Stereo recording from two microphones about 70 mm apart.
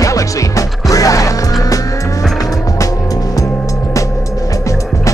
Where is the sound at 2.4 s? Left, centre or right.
Left.